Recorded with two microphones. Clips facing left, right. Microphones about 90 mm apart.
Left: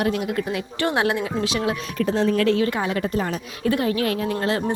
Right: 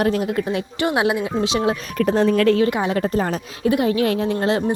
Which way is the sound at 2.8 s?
35° right (ahead or behind).